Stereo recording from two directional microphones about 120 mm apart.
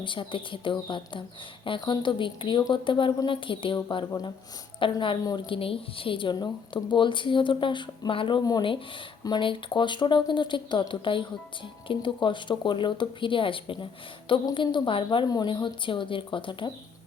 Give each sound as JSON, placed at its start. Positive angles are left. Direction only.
{"t": 0.0, "sound": "a woman's voice", "side_deg": 45}